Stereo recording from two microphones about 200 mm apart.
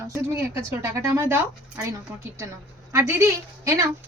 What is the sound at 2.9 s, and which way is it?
Speech, 15° right (ahead or behind).